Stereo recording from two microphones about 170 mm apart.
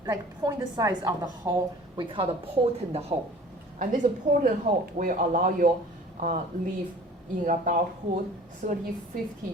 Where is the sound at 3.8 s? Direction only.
50° right (ahead or behind).